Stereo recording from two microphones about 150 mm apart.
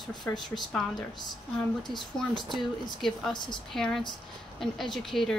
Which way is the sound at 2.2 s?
5° left (ahead or behind).